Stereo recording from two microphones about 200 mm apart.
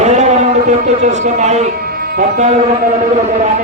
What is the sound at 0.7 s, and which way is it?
A man's voice, 35° right (ahead or behind).